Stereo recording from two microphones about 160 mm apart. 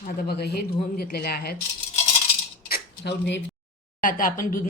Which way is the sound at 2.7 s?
80° left.